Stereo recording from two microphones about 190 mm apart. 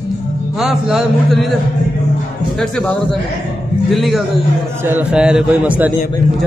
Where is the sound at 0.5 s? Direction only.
Centre (ahead or behind).